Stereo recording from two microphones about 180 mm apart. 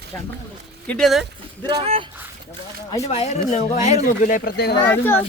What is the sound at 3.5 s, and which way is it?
Speech, 40° left (ahead or behind).